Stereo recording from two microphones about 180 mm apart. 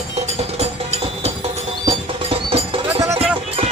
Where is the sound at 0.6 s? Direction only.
35° right (ahead or behind).